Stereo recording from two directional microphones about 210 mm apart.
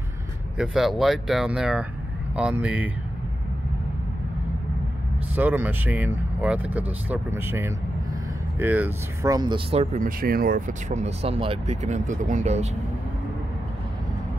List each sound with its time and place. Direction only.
0.6 s speech: centre (ahead or behind)
5.3 s speech: 10° right (ahead or behind); by 12.6 s 35° right (ahead or behind)